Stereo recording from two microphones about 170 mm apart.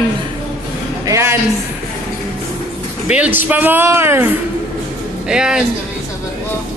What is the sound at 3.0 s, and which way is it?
Speech, 5° right (ahead or behind).